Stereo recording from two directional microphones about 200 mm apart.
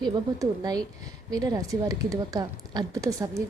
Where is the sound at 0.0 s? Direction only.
20° right (ahead or behind).